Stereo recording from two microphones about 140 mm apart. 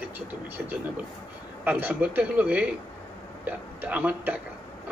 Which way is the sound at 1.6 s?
15° right (ahead or behind).